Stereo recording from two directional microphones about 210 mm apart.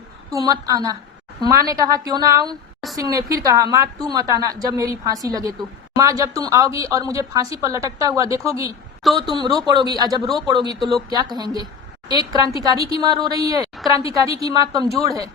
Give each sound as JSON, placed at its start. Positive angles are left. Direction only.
{"t": 0.3, "sound": "a woman's voice", "side_deg": -15}